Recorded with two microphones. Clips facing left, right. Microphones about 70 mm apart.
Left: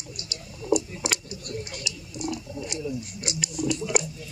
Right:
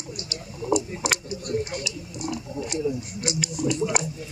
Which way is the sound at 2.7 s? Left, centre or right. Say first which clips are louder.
Right 6 dB; right.